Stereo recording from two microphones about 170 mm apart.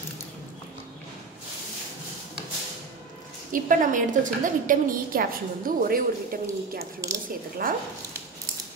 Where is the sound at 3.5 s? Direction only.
50° right (ahead or behind).